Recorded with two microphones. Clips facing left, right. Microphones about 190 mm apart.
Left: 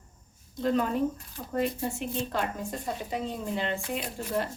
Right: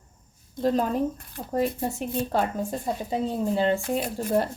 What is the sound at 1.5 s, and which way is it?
Speech, 40° right (ahead or behind).